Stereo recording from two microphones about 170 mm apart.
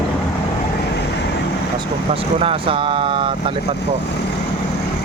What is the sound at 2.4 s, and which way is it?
Speech, 30° right (ahead or behind).